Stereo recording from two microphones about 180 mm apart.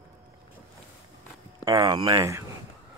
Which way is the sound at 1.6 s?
20° right (ahead or behind).